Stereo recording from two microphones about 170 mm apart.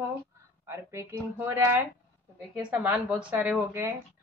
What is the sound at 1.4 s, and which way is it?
A woman's voice, 10° right (ahead or behind).